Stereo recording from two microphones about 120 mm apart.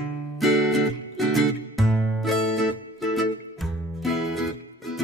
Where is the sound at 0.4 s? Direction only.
Centre (ahead or behind).